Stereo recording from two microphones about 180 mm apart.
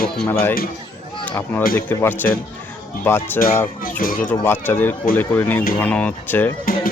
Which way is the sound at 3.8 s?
50° left (ahead or behind).